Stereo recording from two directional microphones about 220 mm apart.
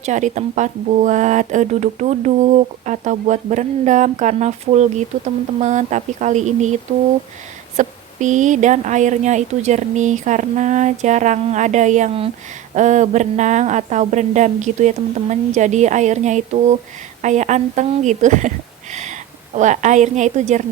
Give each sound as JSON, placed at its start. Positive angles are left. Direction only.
{"t": 0.0, "sound": "speech", "side_deg": -35}
{"t": 7.8, "sound": "speech", "side_deg": -35}